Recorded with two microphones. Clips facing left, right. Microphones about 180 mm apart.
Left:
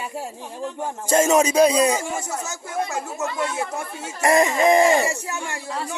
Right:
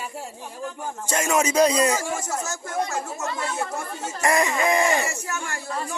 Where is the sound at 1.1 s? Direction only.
25° left (ahead or behind).